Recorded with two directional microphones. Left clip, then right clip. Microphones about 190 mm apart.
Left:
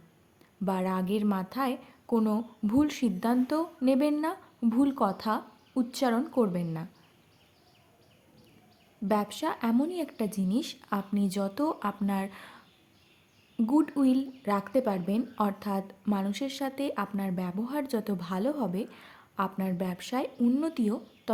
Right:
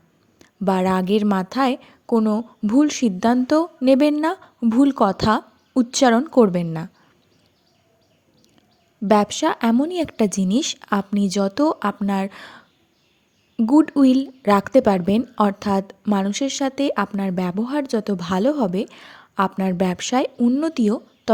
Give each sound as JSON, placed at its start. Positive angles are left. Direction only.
{"t": 0.3, "sound": "a woman's voice", "side_deg": -35}
{"t": 9.0, "sound": "speech", "side_deg": -40}